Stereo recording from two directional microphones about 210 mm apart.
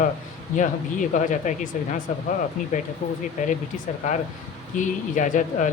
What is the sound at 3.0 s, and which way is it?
Speech, 35° left (ahead or behind).